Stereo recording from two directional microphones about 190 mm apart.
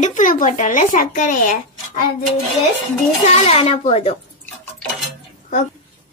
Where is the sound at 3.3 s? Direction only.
30° left (ahead or behind).